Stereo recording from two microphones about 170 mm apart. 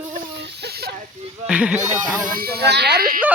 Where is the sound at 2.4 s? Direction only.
70° right (ahead or behind).